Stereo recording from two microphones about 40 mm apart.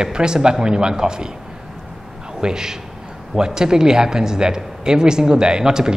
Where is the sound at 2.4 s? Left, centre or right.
Centre.